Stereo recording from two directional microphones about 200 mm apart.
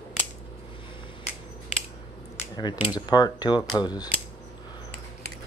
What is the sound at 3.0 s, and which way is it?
Speech, 20° left (ahead or behind).